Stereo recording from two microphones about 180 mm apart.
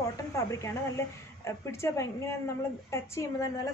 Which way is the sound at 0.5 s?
15° left (ahead or behind).